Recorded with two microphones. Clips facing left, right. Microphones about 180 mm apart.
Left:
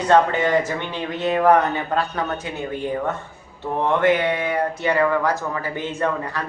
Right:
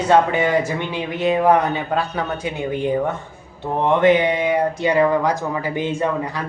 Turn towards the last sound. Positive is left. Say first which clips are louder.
# right 2 dB
turn(degrees=-10)  # may be behind; listen again after turning